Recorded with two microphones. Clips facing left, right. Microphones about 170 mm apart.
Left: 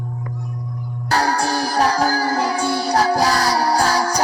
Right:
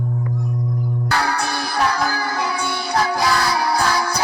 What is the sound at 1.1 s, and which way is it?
Music, 35° left (ahead or behind).